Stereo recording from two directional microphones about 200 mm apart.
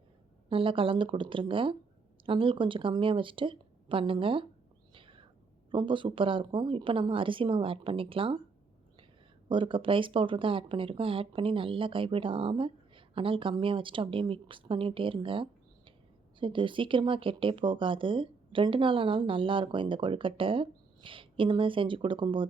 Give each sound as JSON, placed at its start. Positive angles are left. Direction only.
{"t": 0.4, "sound": "speech", "side_deg": -25}
{"t": 4.9, "sound": "a sound", "side_deg": -25}
{"t": 5.7, "sound": "speech", "side_deg": -25}
{"t": 9.5, "sound": "speech", "side_deg": -25}